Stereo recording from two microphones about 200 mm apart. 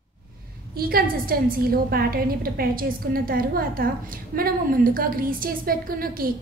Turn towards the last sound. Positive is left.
turn(degrees=-45)  # may be behind; listen again after turning